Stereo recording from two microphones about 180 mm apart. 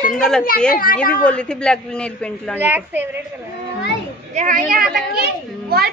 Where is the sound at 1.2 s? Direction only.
5° left (ahead or behind).